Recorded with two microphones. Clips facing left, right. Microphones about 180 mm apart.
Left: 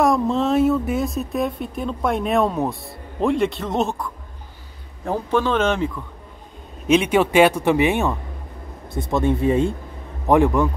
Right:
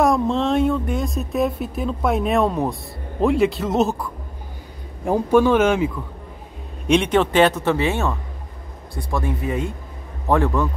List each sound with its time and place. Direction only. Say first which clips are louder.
0.0 s a man's voice: even; centre (ahead or behind)
6.9 s speech: left 1 dB; 5° left (ahead or behind); by 9.8 s 30° left (ahead or behind)
10.2 s speech: left 3 dB; 15° left (ahead or behind)